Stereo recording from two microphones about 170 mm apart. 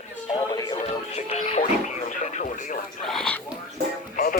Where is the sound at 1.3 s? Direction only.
40° left (ahead or behind).